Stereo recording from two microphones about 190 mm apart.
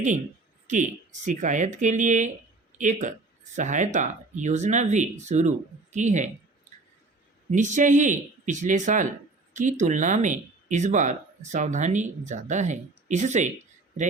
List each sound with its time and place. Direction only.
0.7 s speech: 40° right (ahead or behind)
7.5 s speech: 40° right (ahead or behind)